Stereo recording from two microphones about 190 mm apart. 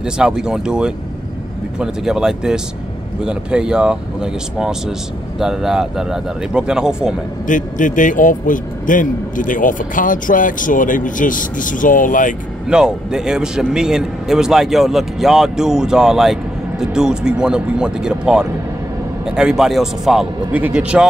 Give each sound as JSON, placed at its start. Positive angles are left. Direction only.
{"t": 0.0, "sound": "a man's voice", "side_deg": -5}
{"t": 7.4, "sound": "speech", "side_deg": 45}
{"t": 12.6, "sound": "a man's voice", "side_deg": -5}